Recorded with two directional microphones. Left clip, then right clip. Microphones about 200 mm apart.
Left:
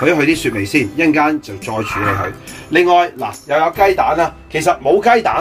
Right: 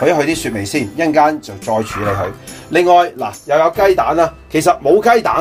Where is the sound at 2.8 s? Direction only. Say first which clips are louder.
Right 1 dB; 30° right (ahead or behind).